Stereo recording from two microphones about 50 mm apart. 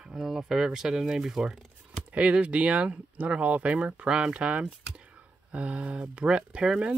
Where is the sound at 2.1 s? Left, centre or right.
Right.